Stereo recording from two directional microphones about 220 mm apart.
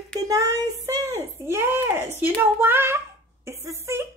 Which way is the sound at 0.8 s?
15° right (ahead or behind).